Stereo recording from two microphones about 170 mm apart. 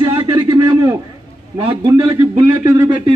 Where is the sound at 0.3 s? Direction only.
20° right (ahead or behind).